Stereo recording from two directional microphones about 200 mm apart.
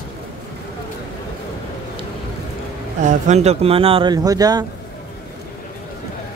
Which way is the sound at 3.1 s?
35° right (ahead or behind).